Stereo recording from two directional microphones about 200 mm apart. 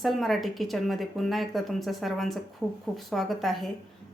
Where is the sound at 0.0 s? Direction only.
Centre (ahead or behind).